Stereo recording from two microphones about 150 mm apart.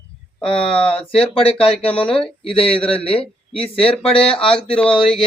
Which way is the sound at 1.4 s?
40° left (ahead or behind).